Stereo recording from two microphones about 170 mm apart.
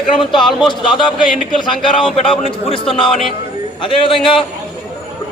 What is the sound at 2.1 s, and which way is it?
Speech, 30° left (ahead or behind).